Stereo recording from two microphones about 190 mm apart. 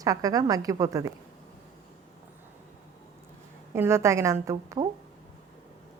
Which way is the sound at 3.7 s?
15° right (ahead or behind).